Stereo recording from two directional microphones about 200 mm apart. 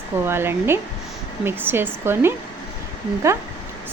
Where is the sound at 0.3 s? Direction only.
10° right (ahead or behind).